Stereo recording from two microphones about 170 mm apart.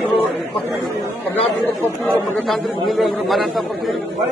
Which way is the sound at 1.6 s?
10° left (ahead or behind).